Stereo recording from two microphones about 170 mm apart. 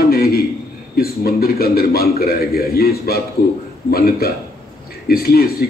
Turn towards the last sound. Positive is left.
turn(degrees=60)  # may be behind; listen again after turning